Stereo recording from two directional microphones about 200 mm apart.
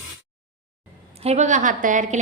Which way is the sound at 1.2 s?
35° right (ahead or behind).